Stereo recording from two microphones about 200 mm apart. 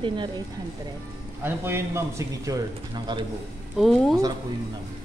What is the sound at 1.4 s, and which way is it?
A man's voice, 10° right (ahead or behind).